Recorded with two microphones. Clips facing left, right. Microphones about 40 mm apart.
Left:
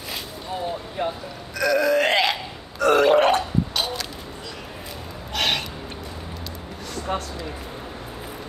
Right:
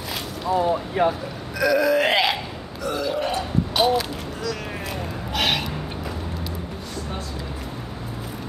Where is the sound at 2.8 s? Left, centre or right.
Left.